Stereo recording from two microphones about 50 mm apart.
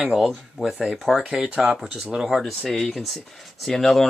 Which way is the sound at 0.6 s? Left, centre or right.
Centre.